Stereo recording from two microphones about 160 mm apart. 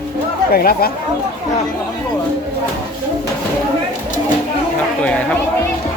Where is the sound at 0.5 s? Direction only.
70° left (ahead or behind).